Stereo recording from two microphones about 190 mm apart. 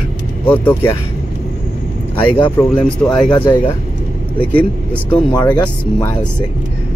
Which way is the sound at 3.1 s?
5° left (ahead or behind).